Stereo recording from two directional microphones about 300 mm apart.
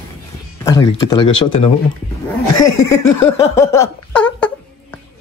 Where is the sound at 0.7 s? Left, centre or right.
Centre.